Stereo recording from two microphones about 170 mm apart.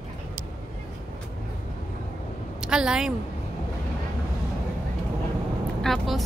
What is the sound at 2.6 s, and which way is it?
Speech, 5° right (ahead or behind).